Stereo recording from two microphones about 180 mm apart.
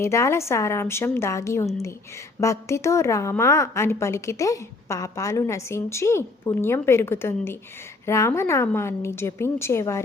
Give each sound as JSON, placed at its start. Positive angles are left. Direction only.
{"t": 0.0, "sound": "a woman's voice", "side_deg": 15}